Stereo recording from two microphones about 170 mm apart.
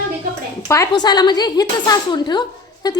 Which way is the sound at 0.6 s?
15° left (ahead or behind).